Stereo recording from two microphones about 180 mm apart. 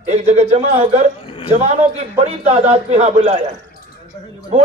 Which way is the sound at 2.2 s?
35° right (ahead or behind).